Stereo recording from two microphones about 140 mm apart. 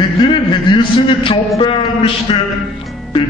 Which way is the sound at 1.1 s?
40° left (ahead or behind).